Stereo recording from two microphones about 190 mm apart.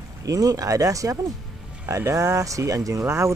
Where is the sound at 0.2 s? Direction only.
20° right (ahead or behind).